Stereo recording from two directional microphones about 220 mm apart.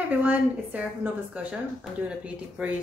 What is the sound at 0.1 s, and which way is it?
A woman's voice, 5° right (ahead or behind).